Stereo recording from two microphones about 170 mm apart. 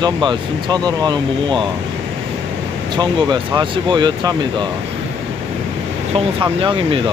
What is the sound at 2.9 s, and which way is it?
Speech, 25° right (ahead or behind).